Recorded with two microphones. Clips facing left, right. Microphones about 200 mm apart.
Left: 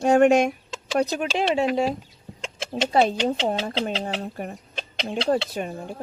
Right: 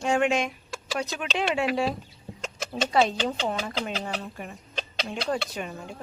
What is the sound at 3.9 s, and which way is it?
Speech, 35° left (ahead or behind).